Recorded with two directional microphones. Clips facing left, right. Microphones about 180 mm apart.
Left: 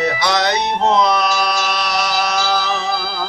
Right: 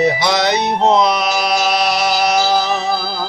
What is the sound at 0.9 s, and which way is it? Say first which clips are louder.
Speech: even; 20° right (ahead or behind).